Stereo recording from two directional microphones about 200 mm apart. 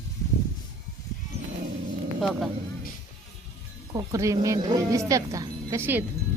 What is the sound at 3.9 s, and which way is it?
Speech, 15° right (ahead or behind).